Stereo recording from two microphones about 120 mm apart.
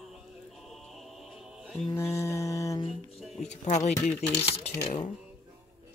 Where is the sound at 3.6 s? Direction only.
75° left (ahead or behind).